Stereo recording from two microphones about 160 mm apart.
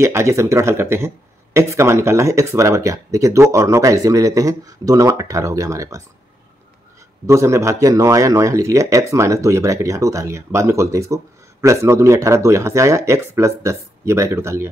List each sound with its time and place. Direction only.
0.0 s speech: 20° right (ahead or behind)
7.2 s speech: 15° right (ahead or behind)